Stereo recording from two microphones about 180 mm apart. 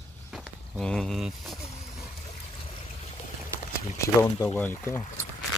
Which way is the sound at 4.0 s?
15° left (ahead or behind).